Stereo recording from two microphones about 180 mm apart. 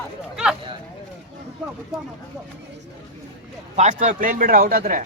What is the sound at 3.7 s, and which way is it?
Speech, 40° right (ahead or behind).